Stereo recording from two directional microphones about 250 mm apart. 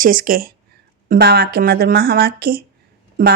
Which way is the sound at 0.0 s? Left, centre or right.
Right.